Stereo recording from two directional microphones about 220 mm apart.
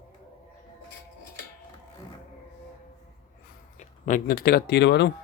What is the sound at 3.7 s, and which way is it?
Speech, 35° left (ahead or behind).